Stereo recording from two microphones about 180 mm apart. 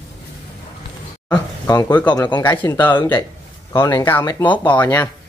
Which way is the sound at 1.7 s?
10° left (ahead or behind).